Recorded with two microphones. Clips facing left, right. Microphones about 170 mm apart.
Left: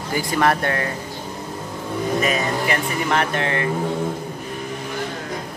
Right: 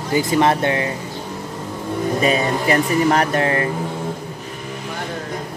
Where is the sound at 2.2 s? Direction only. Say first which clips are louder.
Right 3 dB; 35° right (ahead or behind).